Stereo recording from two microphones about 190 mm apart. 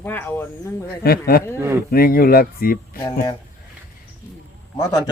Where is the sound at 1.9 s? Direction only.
50° left (ahead or behind).